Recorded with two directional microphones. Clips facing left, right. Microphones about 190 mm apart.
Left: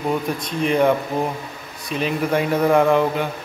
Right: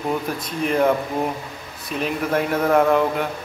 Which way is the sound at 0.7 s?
Centre (ahead or behind).